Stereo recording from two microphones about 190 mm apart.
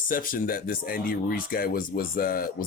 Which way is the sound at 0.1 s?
45° left (ahead or behind).